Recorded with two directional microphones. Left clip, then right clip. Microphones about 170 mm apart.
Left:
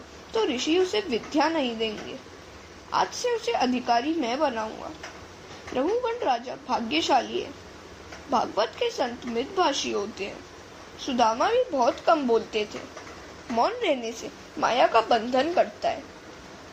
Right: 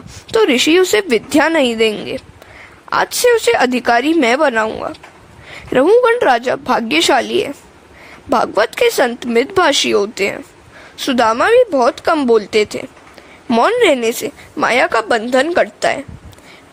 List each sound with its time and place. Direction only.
0.3 s speech: 75° right (ahead or behind)
5.7 s speech: 70° right (ahead or behind)